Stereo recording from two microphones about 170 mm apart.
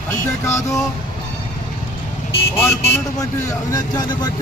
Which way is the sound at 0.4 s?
15° left (ahead or behind).